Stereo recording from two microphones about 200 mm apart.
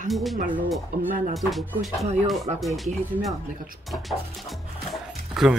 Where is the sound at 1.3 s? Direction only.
Centre (ahead or behind).